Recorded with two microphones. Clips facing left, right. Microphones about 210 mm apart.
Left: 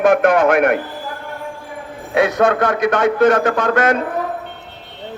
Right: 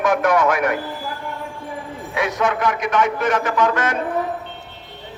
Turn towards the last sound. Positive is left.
turn(degrees=60)  # may be behind; listen again after turning